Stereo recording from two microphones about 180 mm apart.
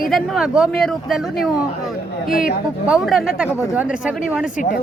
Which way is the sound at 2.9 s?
Centre (ahead or behind).